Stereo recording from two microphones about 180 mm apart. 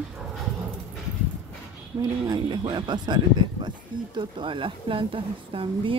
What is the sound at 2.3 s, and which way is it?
Speech, 25° right (ahead or behind).